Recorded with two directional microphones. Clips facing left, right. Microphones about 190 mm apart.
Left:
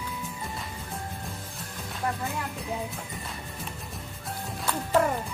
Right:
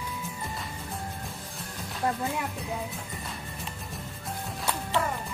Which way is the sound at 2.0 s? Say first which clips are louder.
Right 2 dB; 25° right (ahead or behind).